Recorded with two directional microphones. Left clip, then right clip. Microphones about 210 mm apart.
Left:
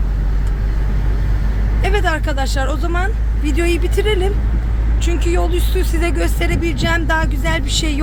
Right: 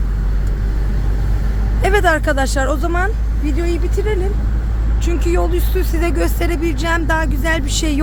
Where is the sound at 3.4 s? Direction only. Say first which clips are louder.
Left 3 dB; 10° left (ahead or behind).